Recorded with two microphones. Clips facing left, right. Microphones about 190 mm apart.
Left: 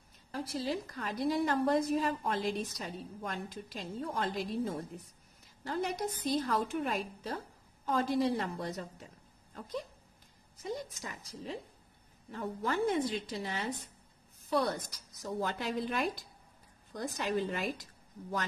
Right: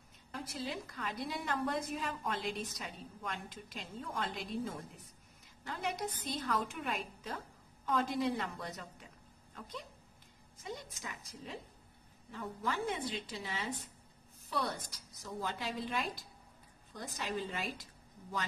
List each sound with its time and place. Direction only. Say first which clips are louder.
0.3 s a woman's voice: left 6 dB; 35° left (ahead or behind)
15.4 s a woman's voice: left 4 dB; 55° left (ahead or behind)